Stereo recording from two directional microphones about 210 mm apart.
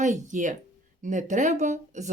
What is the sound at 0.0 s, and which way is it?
Speech, 35° right (ahead or behind).